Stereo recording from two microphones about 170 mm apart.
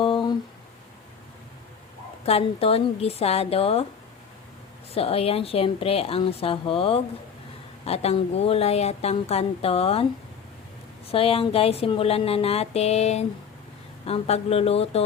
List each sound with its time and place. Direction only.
0.0 s a sound: 30° left (ahead or behind)
2.2 s speech: 35° left (ahead or behind)
4.9 s speech: 35° left (ahead or behind)
11.1 s speech: 35° left (ahead or behind)